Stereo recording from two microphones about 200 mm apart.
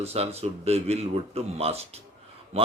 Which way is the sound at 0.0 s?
30° right (ahead or behind).